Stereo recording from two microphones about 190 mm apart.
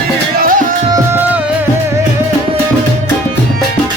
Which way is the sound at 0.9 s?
10° right (ahead or behind).